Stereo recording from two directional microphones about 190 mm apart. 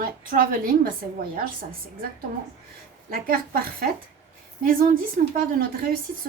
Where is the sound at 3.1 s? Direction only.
50° right (ahead or behind).